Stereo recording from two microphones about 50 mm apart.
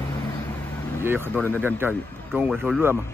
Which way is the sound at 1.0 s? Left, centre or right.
Right.